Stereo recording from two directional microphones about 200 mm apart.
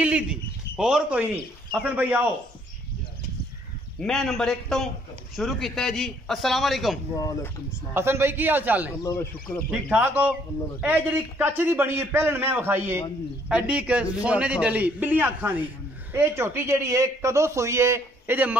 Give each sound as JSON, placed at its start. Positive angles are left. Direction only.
{"t": 0.0, "sound": "a sound", "side_deg": -5}
{"t": 1.8, "sound": "a man's voice", "side_deg": -10}
{"t": 4.0, "sound": "a man's voice", "side_deg": 0}
{"t": 7.2, "sound": "speech", "side_deg": 15}
{"t": 7.9, "sound": "a man's voice", "side_deg": -10}